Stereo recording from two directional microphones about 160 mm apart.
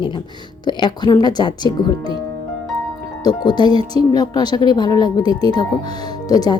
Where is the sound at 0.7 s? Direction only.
30° left (ahead or behind).